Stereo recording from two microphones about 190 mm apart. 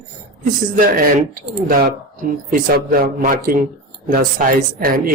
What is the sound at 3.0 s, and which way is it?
Speech, 50° right (ahead or behind).